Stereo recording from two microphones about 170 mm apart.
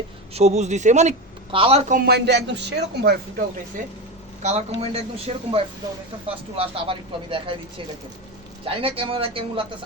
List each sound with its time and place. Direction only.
0.3 s speech: 40° right (ahead or behind)
1.5 s speech: 35° right (ahead or behind)
1.9 s speech: 65° right (ahead or behind)
4.4 s speech: 40° right (ahead or behind)
8.6 s speech: 35° right (ahead or behind)